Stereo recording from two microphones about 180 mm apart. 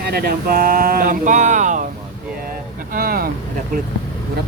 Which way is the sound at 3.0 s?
55° right (ahead or behind).